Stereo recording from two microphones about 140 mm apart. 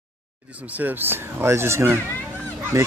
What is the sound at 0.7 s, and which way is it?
Speech, 15° right (ahead or behind).